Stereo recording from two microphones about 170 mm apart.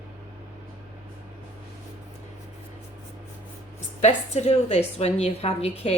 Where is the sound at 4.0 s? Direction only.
40° left (ahead or behind).